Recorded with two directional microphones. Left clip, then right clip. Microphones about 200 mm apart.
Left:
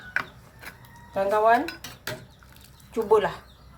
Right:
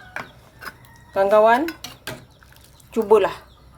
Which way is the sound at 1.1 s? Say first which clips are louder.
Right 6 dB; 55° right (ahead or behind).